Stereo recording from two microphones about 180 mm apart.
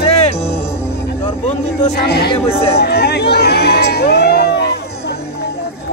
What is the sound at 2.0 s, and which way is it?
Music, 60° left (ahead or behind).